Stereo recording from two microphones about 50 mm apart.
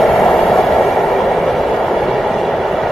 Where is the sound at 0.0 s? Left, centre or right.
Centre.